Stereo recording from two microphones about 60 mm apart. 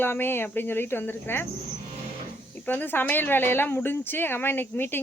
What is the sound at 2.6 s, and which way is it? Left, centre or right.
Speech, left.